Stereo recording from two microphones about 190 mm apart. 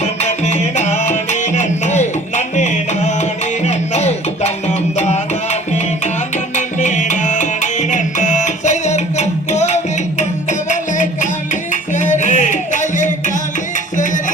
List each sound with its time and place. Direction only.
0.0 s music: 35° left (ahead or behind)